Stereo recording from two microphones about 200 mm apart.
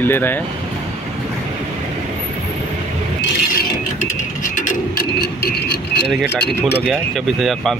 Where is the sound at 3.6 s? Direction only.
40° left (ahead or behind).